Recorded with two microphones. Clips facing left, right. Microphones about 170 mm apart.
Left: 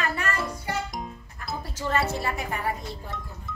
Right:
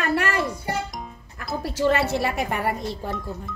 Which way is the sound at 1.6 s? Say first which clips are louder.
Right 6 dB; 80° right.